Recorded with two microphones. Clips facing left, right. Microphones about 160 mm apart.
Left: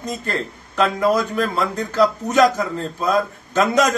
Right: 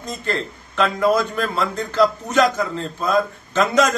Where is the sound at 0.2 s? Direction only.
45° left (ahead or behind).